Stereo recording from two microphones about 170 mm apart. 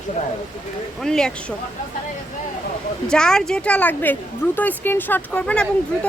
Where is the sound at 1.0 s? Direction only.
5° left (ahead or behind).